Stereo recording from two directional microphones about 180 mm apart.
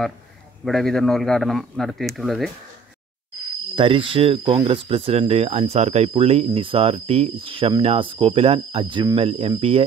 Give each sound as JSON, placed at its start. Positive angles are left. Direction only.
{"t": 0.7, "sound": "a man's voice", "side_deg": 0}
{"t": 3.7, "sound": "speech", "side_deg": -30}